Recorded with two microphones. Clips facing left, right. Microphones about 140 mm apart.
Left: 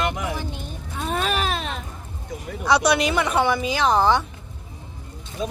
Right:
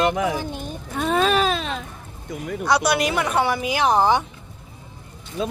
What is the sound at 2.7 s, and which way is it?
Speech, centre (ahead or behind).